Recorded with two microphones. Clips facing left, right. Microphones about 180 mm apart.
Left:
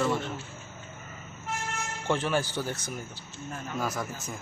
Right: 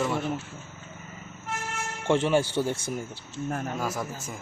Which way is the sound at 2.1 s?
25° right (ahead or behind).